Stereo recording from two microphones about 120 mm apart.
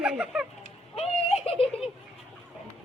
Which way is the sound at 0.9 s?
55° left (ahead or behind).